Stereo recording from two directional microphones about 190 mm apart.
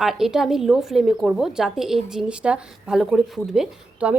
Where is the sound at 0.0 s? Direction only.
Centre (ahead or behind).